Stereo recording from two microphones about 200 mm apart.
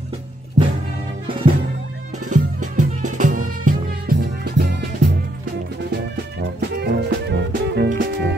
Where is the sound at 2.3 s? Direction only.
40° right (ahead or behind); by 4.8 s 55° right (ahead or behind).